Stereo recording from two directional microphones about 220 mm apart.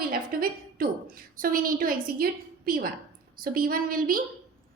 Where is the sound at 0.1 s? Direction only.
40° right (ahead or behind).